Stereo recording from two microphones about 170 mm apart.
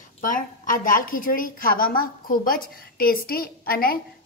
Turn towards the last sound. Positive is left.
turn(degrees=60)  # may be behind; listen again after turning